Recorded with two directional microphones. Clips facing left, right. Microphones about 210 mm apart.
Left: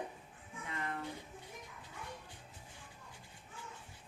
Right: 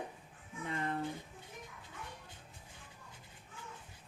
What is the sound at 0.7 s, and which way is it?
Speech, 30° right (ahead or behind).